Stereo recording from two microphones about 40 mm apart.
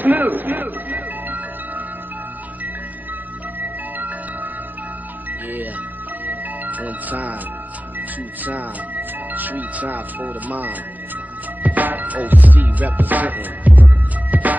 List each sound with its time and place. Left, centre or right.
0.0 s music: right
3.5 s music: right
6.2 s music: right
8.5 s speech: right
11.6 s music: right